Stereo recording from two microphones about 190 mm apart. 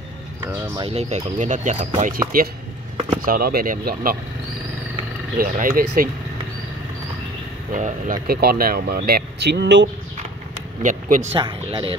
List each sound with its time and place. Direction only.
0.7 s speech: 30° right (ahead or behind); by 4.2 s 50° right (ahead or behind)
5.4 s speech: 45° right (ahead or behind)
7.7 s speech: 45° right (ahead or behind); by 9.8 s 65° right (ahead or behind)
10.8 s speech: 40° right (ahead or behind)
11.3 s speech: 25° right (ahead or behind)